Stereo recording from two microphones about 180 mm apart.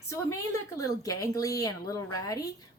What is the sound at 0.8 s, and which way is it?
A woman's voice, 20° left (ahead or behind).